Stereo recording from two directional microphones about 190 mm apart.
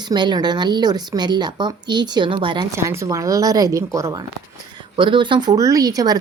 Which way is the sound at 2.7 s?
15° right (ahead or behind).